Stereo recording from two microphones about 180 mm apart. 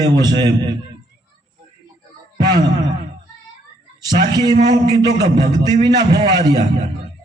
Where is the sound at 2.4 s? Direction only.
20° right (ahead or behind).